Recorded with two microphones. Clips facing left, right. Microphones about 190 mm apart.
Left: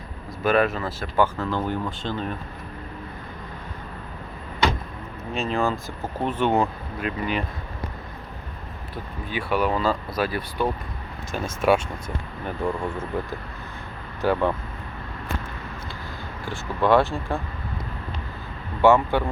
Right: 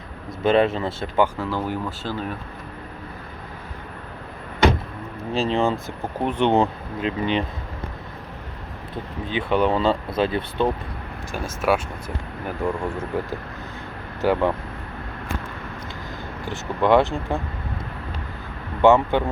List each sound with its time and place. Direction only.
0.4 s speech: 25° right (ahead or behind)
1.2 s speech: 10° right (ahead or behind)
5.3 s speech: 30° right (ahead or behind)
6.0 s speech: 15° right (ahead or behind)
9.3 s speech: 20° right (ahead or behind)
11.3 s speech: 10° right (ahead or behind)
14.2 s speech: 15° right (ahead or behind)
16.5 s speech: 20° right (ahead or behind)
18.8 s speech: 20° right (ahead or behind)